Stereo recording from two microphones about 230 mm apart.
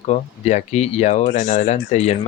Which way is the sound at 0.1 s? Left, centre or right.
Left.